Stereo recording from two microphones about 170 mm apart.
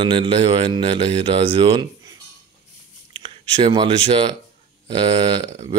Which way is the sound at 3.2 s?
35° right (ahead or behind).